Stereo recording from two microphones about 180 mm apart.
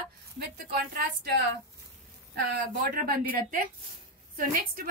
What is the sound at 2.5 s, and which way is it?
A woman's voice, 50° right (ahead or behind).